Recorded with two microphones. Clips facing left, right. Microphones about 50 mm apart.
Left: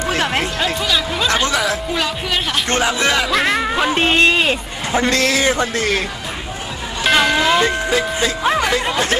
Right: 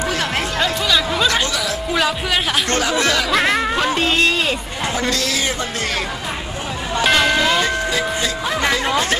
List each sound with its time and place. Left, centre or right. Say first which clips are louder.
0.1 s music: left 3 dB; left
0.6 s music: right 1 dB; centre
1.3 s music: left 3 dB; left
1.9 s music: right 2 dB; centre
2.6 s speech: left 1 dB; left
3.2 s music: even; centre
3.9 s a man's voice: left 6 dB; left
7.0 s church bell: left 1 dB; centre